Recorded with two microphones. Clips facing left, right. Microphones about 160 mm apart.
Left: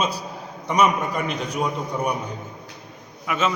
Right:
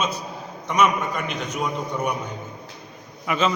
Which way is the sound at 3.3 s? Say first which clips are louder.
Right 1 dB; centre (ahead or behind).